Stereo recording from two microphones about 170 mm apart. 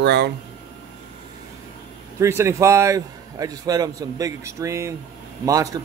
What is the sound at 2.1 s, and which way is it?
A man's voice, 15° right (ahead or behind).